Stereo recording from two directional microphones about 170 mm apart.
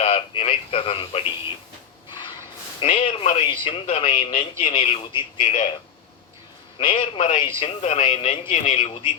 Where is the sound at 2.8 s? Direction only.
35° left (ahead or behind).